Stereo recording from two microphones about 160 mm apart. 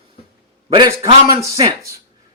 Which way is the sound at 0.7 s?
30° right (ahead or behind).